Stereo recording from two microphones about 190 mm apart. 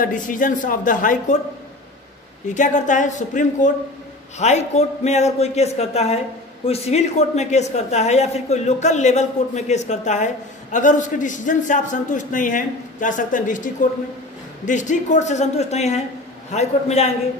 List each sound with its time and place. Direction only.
0.0 s speech: 45° left (ahead or behind)
2.4 s speech: 40° left (ahead or behind)